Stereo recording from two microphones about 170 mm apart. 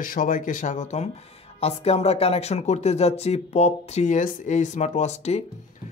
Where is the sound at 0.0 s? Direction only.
55° left (ahead or behind).